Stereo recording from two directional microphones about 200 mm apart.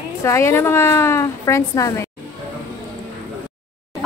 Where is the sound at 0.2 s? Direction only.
15° left (ahead or behind).